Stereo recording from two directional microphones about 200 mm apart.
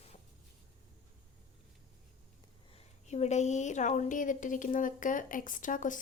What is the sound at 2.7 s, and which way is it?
A woman's voice, 30° left (ahead or behind).